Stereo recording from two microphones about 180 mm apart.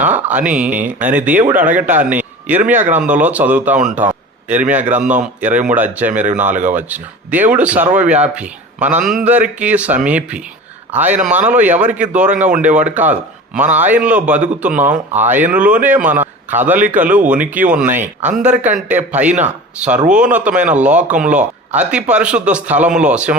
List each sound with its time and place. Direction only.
0.0 s a man's voice: 10° right (ahead or behind)
6.5 s speech: 45° right (ahead or behind)
6.7 s speech: 10° right (ahead or behind)
16.1 s a man's voice: 40° right (ahead or behind)
16.6 s speech: 10° right (ahead or behind)
18.0 s speech: 45° right (ahead or behind)
18.9 s speech: 10° right (ahead or behind)